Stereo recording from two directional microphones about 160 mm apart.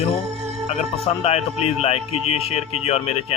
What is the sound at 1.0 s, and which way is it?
Speech, 40° left (ahead or behind).